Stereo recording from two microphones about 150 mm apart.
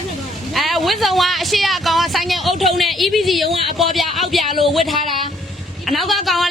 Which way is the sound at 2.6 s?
Centre (ahead or behind).